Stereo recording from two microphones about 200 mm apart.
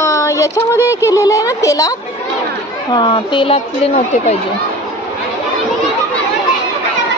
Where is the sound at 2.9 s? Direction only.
25° left (ahead or behind).